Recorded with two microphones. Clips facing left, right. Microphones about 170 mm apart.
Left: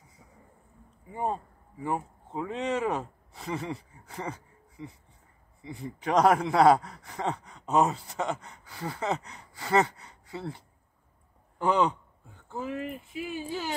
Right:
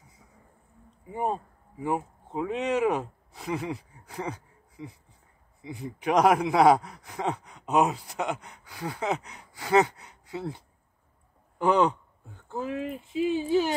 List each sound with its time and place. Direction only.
1.0 s speech: 15° right (ahead or behind)
3.0 s speech: 5° right (ahead or behind)
5.6 s speech: 15° right (ahead or behind)
8.6 s a sound: centre (ahead or behind)
9.0 s speech: 15° right (ahead or behind)
12.5 s a sound: centre (ahead or behind)
13.2 s speech: 20° right (ahead or behind)